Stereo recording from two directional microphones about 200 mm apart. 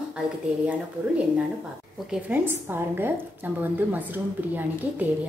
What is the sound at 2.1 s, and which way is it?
A woman's voice, 10° right (ahead or behind).